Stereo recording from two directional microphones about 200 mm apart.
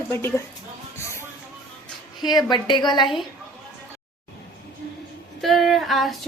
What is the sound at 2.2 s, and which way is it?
Speech, 20° left (ahead or behind).